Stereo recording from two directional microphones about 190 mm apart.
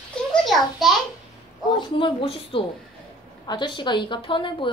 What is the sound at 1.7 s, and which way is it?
A woman's voice, 30° left (ahead or behind).